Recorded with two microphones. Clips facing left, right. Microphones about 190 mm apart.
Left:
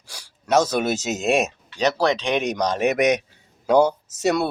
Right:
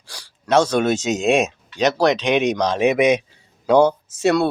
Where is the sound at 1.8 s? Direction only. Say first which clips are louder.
Right 3 dB; 30° left (ahead or behind).